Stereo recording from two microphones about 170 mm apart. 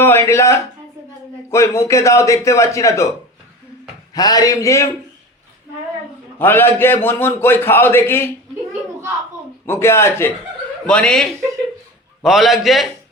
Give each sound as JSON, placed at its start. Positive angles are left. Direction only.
{"t": 0.0, "sound": "a man's voice", "side_deg": 15}
{"t": 4.1, "sound": "a man's voice", "side_deg": 20}
{"t": 6.4, "sound": "a man's voice", "side_deg": 15}
{"t": 9.6, "sound": "a man's voice", "side_deg": 15}